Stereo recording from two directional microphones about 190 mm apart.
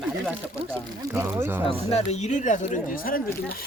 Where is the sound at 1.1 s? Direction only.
10° right (ahead or behind).